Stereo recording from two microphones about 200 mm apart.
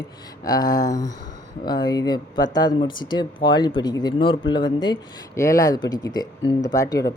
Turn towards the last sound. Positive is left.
turn(degrees=15)  # may be behind; listen again after turning